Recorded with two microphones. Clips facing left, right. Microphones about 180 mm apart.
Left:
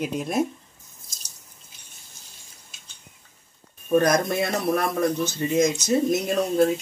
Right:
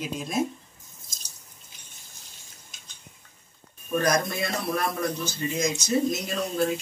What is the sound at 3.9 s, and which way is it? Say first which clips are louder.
Speech: left 5 dB; 55° left (ahead or behind).